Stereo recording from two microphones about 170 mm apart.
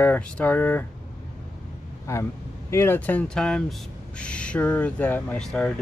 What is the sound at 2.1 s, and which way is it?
Speech, 15° left (ahead or behind).